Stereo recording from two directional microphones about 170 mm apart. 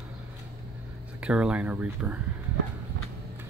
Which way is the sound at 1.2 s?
5° right (ahead or behind).